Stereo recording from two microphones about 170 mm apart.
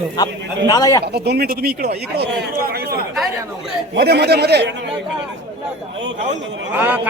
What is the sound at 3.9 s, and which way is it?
Speech, 75° right (ahead or behind).